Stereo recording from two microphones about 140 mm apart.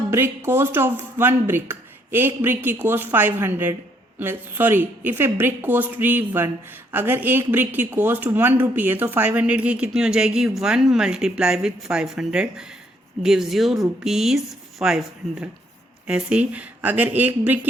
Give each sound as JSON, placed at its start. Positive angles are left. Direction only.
{"t": 0.1, "sound": "speech", "side_deg": -15}